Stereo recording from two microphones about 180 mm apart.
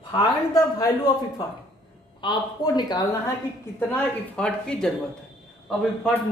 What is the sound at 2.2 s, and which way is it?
Speech, 25° left (ahead or behind).